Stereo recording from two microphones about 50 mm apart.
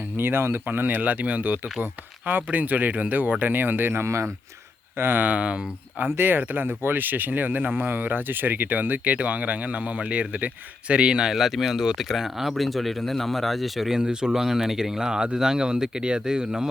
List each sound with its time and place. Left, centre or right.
0.2 s speech: right
4.0 s speech: right
4.9 s speech: right
5.2 s a man's voice: right
6.0 s a man's voice: right; by 14.0 s centre
14.0 s speech: centre